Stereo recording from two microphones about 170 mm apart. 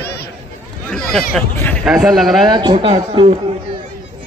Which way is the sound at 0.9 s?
5° left (ahead or behind).